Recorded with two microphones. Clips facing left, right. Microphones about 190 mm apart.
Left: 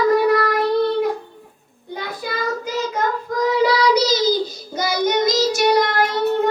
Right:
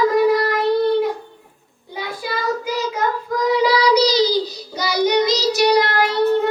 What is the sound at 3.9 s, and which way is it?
Child singing, 50° left (ahead or behind).